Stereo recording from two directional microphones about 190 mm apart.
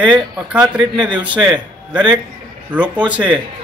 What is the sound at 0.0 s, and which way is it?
Speech, 5° right (ahead or behind).